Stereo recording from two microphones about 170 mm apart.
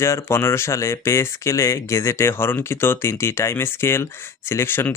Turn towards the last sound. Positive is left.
turn(degrees=15)  # may be behind; listen again after turning